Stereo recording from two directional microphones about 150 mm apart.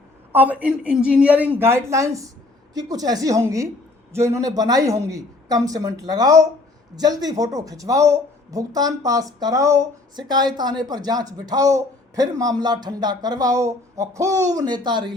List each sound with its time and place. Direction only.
0.3 s speech: 10° right (ahead or behind); by 15.1 s 30° right (ahead or behind)